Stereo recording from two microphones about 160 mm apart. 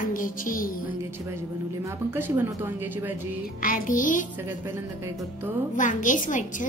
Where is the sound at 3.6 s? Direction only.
55° left (ahead or behind).